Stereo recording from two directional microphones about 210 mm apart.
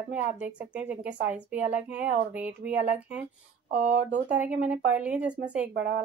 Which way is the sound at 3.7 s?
50° right (ahead or behind).